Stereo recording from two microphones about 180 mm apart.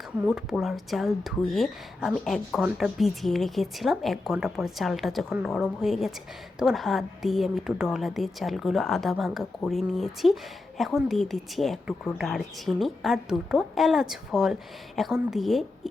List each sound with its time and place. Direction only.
0.3 s a woman's voice: centre (ahead or behind)